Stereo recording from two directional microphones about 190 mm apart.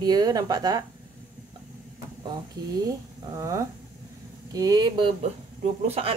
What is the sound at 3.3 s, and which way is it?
A woman's voice, 15° right (ahead or behind).